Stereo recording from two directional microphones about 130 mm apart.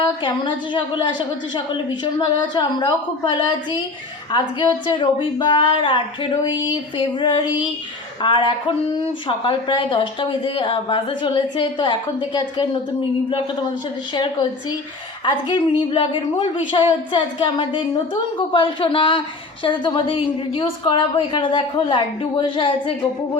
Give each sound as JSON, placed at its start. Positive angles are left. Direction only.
{"t": 0.0, "sound": "a woman's voice", "side_deg": 35}
{"t": 14.1, "sound": "a woman's voice", "side_deg": 35}
{"t": 15.9, "sound": "a woman's voice", "side_deg": 45}